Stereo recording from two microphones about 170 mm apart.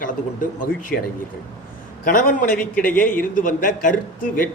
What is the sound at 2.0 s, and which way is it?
A man's voice, 55° left (ahead or behind).